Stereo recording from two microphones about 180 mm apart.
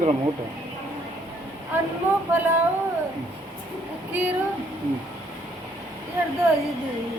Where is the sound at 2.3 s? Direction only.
10° right (ahead or behind).